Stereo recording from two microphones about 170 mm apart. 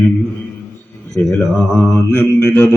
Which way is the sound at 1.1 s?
15° left (ahead or behind).